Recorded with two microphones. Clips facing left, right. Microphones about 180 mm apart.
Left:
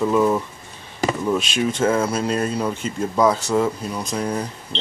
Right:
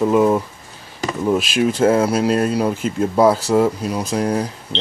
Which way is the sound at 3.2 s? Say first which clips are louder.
Right 4 dB; 30° right (ahead or behind).